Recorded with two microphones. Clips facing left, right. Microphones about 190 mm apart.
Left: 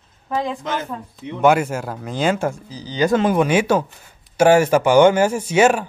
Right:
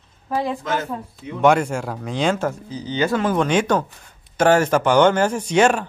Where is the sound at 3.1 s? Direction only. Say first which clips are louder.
Left 3 dB; 15° left (ahead or behind).